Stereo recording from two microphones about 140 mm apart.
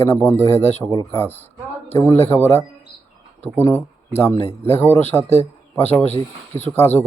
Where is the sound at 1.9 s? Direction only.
25° left (ahead or behind).